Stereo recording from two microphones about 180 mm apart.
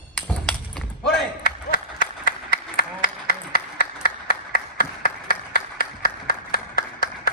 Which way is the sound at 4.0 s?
60° left (ahead or behind).